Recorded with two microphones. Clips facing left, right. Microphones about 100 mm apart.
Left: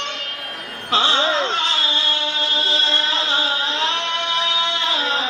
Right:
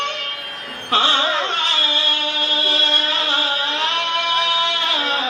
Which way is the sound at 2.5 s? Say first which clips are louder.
Right 2 dB; 20° left (ahead or behind).